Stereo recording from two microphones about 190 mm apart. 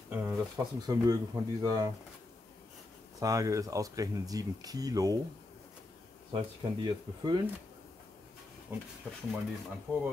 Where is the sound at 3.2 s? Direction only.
20° right (ahead or behind).